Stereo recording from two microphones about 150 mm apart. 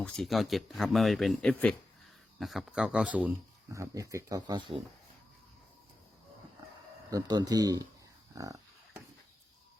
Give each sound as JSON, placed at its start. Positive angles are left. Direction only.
{"t": 0.0, "sound": "speech", "side_deg": 0}
{"t": 3.7, "sound": "speech", "side_deg": -20}
{"t": 7.1, "sound": "speech", "side_deg": -25}